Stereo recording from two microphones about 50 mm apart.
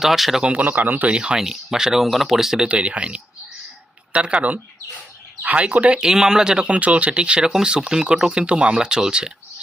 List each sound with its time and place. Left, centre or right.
0.0 s speech: centre
0.4 s a man's voice: right
1.1 s speech: centre
2.6 s speech: right
6.0 s speech: centre
6.7 s speech: right